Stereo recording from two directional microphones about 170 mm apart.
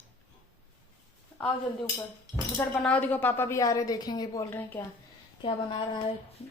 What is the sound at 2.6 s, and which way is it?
A woman's voice, 10° left (ahead or behind).